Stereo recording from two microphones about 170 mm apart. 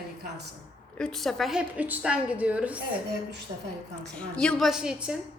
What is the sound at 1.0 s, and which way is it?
A woman's voice, centre (ahead or behind).